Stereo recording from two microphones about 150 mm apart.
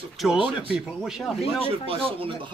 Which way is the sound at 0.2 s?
5° right (ahead or behind).